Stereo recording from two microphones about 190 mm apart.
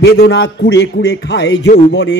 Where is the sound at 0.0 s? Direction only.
60° left (ahead or behind).